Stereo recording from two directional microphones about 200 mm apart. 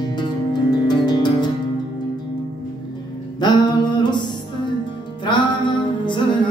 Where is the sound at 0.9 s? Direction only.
20° left (ahead or behind).